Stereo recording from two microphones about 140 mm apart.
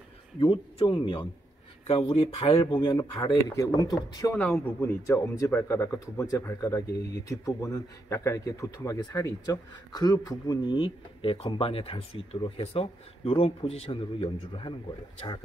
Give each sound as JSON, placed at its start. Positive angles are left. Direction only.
{"t": 0.4, "sound": "speech", "side_deg": 35}
{"t": 4.4, "sound": "speech", "side_deg": 10}